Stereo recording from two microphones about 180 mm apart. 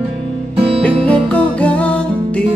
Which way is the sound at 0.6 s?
30° right (ahead or behind).